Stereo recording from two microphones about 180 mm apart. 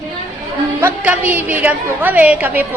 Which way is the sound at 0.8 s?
10° right (ahead or behind).